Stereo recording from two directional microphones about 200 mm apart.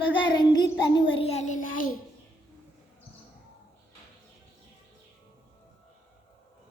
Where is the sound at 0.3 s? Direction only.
20° left (ahead or behind); by 2.0 s 40° left (ahead or behind).